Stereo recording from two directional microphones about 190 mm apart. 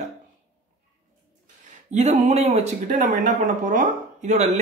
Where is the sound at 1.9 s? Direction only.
40° right (ahead or behind).